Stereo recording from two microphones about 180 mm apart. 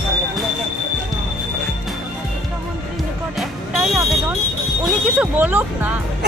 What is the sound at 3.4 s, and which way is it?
Music, centre (ahead or behind).